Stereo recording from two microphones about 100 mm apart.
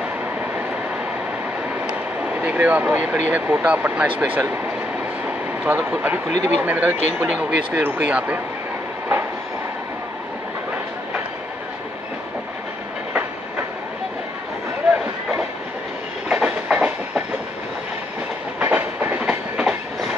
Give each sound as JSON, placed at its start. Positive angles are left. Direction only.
{"t": 2.4, "sound": "speech", "side_deg": -15}
{"t": 5.7, "sound": "speech", "side_deg": -15}
{"t": 16.3, "sound": "train", "side_deg": -10}
{"t": 18.6, "sound": "train", "side_deg": -20}